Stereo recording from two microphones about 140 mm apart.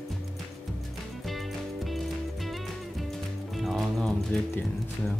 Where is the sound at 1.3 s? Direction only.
Centre (ahead or behind).